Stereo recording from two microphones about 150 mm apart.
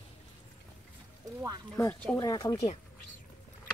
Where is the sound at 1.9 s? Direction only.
5° left (ahead or behind).